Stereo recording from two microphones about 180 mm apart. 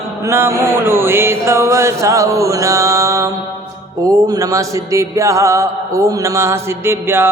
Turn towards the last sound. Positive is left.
turn(degrees=-15)  # may be behind; listen again after turning